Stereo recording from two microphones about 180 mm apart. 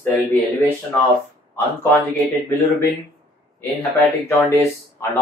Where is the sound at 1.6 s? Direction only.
10° left (ahead or behind).